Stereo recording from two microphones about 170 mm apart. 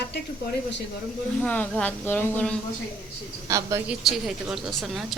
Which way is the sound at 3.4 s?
20° right (ahead or behind).